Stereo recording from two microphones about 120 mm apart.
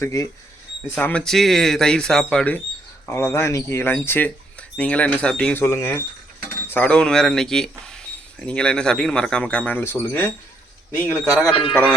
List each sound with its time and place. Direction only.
0.0 s speech: 25° left (ahead or behind)
0.9 s speech: 10° left (ahead or behind)
3.1 s speech: 20° left (ahead or behind)